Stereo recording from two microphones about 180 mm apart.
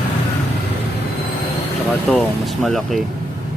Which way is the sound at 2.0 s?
5° left (ahead or behind).